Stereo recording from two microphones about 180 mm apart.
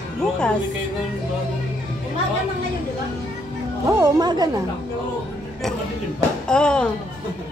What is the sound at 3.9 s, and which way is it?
Speech, 20° right (ahead or behind).